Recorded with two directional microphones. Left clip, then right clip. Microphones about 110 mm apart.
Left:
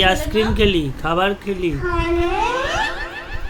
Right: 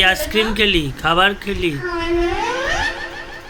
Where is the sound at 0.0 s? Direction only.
20° left (ahead or behind).